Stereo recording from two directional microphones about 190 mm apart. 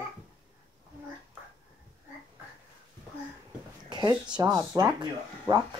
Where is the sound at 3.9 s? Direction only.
20° right (ahead or behind).